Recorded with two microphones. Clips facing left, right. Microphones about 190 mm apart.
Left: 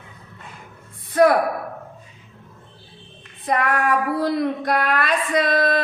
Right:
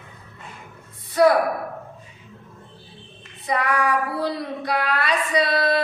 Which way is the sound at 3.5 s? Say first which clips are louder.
Left 2 dB; 50° left (ahead or behind).